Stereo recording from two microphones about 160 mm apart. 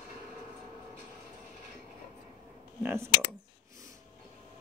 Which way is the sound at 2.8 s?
15° right (ahead or behind).